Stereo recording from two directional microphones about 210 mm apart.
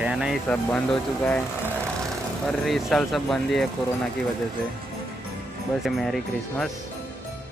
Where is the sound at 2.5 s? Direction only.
Centre (ahead or behind).